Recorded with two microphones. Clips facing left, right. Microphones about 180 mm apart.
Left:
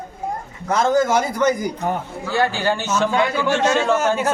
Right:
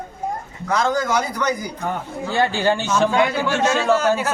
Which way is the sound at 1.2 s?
50° left (ahead or behind).